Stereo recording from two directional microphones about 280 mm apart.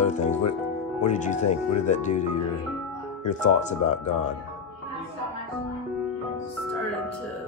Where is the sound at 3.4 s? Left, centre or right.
Left.